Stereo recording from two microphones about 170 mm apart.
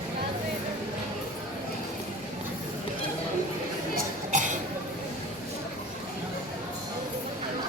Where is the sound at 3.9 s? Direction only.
50° right (ahead or behind).